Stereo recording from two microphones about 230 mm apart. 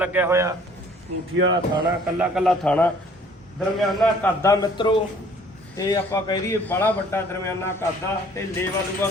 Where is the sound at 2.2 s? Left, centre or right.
Centre.